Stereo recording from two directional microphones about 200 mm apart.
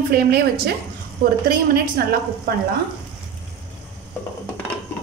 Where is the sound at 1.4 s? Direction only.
45° right (ahead or behind).